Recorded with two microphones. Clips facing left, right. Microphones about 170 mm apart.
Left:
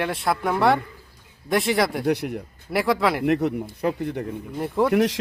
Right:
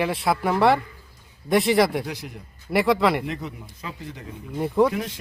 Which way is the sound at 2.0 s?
65° left (ahead or behind).